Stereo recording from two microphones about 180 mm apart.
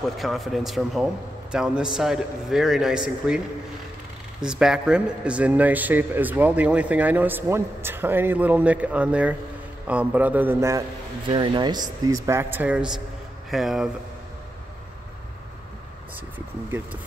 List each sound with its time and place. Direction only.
0.2 s a man's voice: centre (ahead or behind)
4.4 s a man's voice: 5° right (ahead or behind)
11.2 s a man's voice: 25° right (ahead or behind); by 13.8 s centre (ahead or behind)